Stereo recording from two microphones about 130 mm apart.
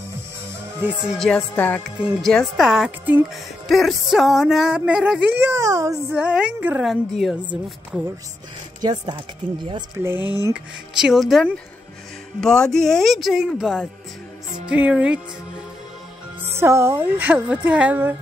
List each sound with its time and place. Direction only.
0.7 s speech: 10° right (ahead or behind)
1.1 s a woman's voice: 5° left (ahead or behind); by 5.9 s 25° right (ahead or behind)
6.1 s speech: 10° right (ahead or behind)
6.8 s speech: centre (ahead or behind)
7.4 s speech: 10° right (ahead or behind)
8.8 s speech: 35° right (ahead or behind)
10.1 s speech: 30° left (ahead or behind)
10.5 s speech: 5° right (ahead or behind)
16.5 s speech: 20° right (ahead or behind)